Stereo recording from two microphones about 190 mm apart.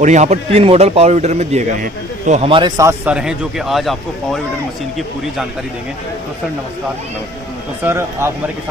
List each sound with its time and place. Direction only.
0.0 s speech: 40° right (ahead or behind)
2.8 s speech: 10° right (ahead or behind)
7.8 s a man's voice: 15° right (ahead or behind)